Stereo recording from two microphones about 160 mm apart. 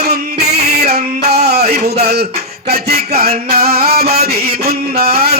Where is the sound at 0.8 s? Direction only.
85° right.